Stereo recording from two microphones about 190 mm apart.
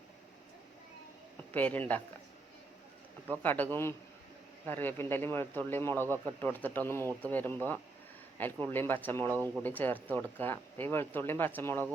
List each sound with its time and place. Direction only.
1.5 s speech: 10° left (ahead or behind)
3.4 s speech: 10° left (ahead or behind)
9.2 s speech: 15° right (ahead or behind)
9.6 s speech: 10° left (ahead or behind)